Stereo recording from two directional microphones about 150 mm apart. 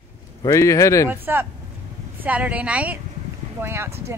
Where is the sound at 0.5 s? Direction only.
20° left (ahead or behind).